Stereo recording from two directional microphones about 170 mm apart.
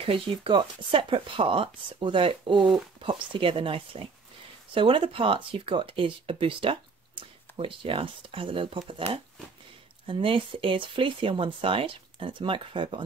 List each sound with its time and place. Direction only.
0.0 s speech: 30° right (ahead or behind)